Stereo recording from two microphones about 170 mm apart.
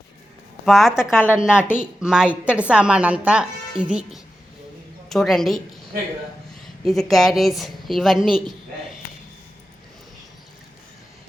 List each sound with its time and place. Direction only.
0.6 s a woman's voice: centre (ahead or behind)
1.1 s a woman's voice: 10° left (ahead or behind)
1.4 s a woman's voice: 5° right (ahead or behind)
6.8 s a woman's voice: centre (ahead or behind)